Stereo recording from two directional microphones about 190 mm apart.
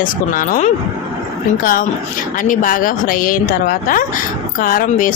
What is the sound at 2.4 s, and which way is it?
Speech, 45° left (ahead or behind).